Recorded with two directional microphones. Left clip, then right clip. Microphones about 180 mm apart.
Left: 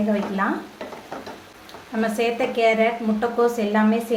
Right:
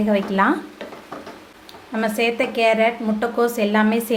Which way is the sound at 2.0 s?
35° right (ahead or behind).